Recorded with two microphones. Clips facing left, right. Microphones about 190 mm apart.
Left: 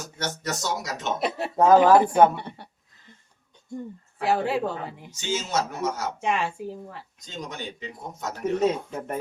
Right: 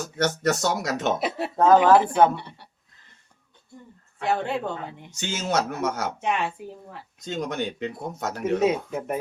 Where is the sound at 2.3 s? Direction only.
50° left (ahead or behind).